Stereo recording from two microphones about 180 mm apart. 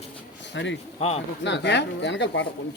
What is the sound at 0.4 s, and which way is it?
Speech, 80° left.